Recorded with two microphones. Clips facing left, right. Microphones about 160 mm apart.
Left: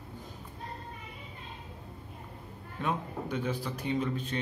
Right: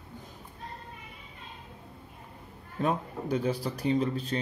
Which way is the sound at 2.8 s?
35° right (ahead or behind).